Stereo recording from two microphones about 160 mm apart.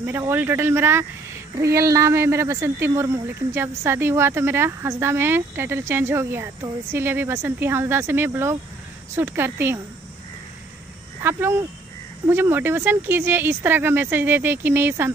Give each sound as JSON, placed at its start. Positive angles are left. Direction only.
{"t": 0.0, "sound": "speech", "side_deg": -15}
{"t": 11.2, "sound": "speech", "side_deg": -15}